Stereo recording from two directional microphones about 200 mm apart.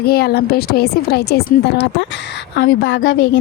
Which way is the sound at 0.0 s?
50° left (ahead or behind).